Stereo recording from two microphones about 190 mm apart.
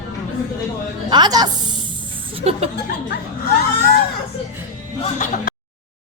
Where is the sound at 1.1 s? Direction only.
20° right (ahead or behind).